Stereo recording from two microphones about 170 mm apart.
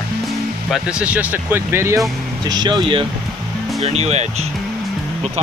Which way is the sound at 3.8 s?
40° right (ahead or behind).